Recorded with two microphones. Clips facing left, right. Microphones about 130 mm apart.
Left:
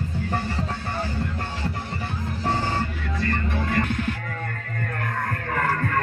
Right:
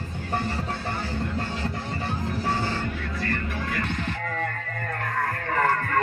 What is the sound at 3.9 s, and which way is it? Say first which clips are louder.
Music: left 4 dB; 5° left (ahead or behind).